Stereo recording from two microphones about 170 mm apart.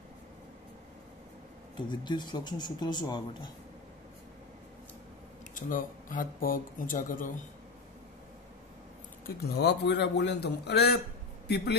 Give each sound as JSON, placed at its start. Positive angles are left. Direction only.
{"t": 1.8, "sound": "speech", "side_deg": 25}
{"t": 5.5, "sound": "speech", "side_deg": 50}
{"t": 9.2, "sound": "a man's voice", "side_deg": 80}